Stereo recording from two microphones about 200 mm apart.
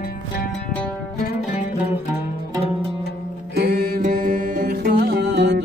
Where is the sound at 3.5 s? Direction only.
55° right (ahead or behind).